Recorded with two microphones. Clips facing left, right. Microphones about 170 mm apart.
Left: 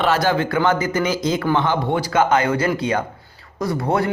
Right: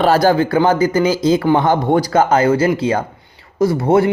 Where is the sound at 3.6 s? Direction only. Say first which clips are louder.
Right 7 dB; 25° right (ahead or behind).